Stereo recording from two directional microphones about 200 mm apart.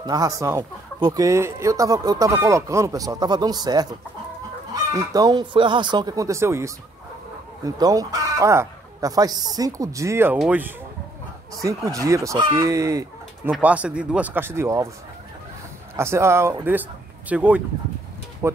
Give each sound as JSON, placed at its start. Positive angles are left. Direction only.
{"t": 0.0, "sound": "speech", "side_deg": -20}
{"t": 4.9, "sound": "speech", "side_deg": -20}
{"t": 16.0, "sound": "speech", "side_deg": -15}